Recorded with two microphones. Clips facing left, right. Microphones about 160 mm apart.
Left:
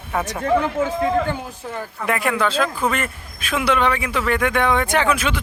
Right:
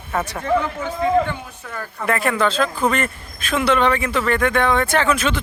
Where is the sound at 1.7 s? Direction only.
15° left (ahead or behind).